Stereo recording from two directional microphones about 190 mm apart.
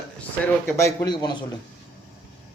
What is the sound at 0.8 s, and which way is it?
Speech, 15° left (ahead or behind).